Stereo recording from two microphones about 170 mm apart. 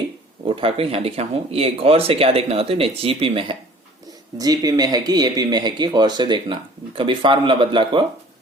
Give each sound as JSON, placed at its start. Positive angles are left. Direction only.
{"t": 0.4, "sound": "speech", "side_deg": -30}